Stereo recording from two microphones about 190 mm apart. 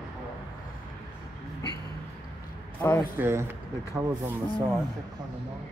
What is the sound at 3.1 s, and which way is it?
Speech, 15° right (ahead or behind).